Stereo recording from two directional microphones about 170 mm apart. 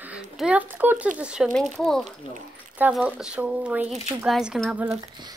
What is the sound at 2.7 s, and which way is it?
Speech, 10° right (ahead or behind).